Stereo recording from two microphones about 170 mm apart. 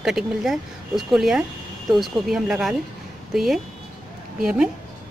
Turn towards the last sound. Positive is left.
turn(degrees=-5)  # may be behind; listen again after turning